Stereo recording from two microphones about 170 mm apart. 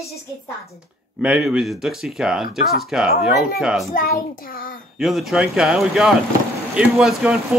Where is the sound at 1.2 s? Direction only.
5° right (ahead or behind).